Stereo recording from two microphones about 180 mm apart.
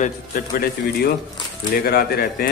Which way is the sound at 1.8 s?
55° left (ahead or behind).